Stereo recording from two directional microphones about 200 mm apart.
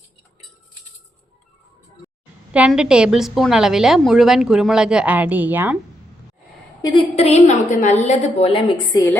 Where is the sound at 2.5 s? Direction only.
5° right (ahead or behind).